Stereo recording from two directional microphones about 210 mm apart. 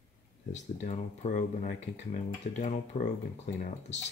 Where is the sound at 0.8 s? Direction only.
35° left (ahead or behind).